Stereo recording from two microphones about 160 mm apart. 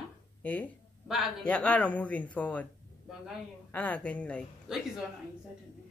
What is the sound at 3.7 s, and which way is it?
Speech, 10° left (ahead or behind).